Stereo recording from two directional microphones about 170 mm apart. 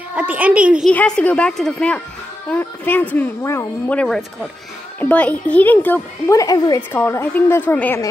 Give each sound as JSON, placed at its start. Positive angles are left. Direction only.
{"t": 0.1, "sound": "a child's voice", "side_deg": -10}
{"t": 0.8, "sound": "speech", "side_deg": 5}